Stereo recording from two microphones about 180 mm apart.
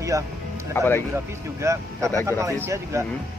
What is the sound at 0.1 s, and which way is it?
Speech, 15° right (ahead or behind).